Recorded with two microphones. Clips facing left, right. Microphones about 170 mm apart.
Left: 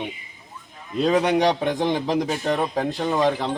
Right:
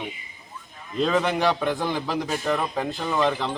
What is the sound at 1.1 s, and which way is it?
A man's voice, 15° left (ahead or behind).